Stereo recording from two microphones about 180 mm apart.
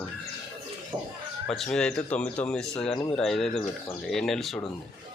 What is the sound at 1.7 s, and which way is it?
Speech, 5° left (ahead or behind).